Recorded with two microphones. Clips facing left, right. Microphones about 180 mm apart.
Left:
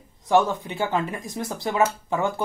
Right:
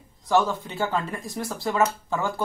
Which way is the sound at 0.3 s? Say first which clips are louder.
Left 2 dB; 15° left (ahead or behind).